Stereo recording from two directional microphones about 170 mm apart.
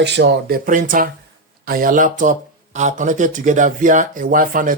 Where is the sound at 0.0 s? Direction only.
90° right.